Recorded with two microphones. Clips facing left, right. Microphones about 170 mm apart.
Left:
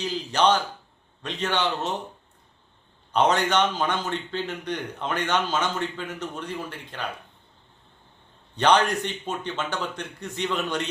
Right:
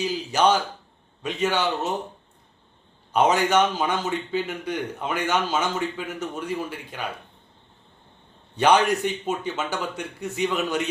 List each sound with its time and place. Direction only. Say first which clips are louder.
0.0 s a man's voice: right 1 dB; 10° right (ahead or behind)
3.1 s a man's voice: right 2 dB; 10° right (ahead or behind)
8.5 s a man's voice: right 2 dB; 10° right (ahead or behind)